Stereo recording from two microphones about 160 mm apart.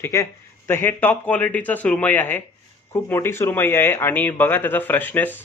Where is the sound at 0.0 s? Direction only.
20° left (ahead or behind).